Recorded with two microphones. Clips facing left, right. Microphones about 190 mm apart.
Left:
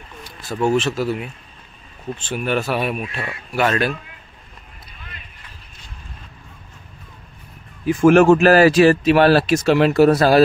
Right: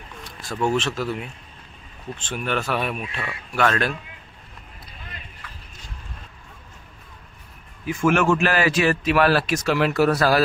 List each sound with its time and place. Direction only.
0.2 s speech: 5° left (ahead or behind)
7.8 s speech: 35° left (ahead or behind)